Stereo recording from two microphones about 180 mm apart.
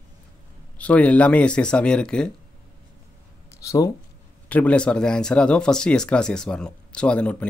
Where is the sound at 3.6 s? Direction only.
20° left (ahead or behind).